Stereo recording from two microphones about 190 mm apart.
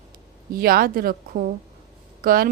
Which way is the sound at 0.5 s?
50° right (ahead or behind).